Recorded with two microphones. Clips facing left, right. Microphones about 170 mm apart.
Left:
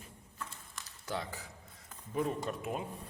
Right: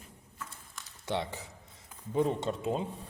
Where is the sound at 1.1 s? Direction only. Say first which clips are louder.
Right 5 dB; 25° right (ahead or behind).